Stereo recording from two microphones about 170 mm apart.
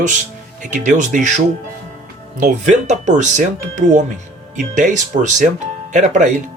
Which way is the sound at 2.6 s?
45° right (ahead or behind).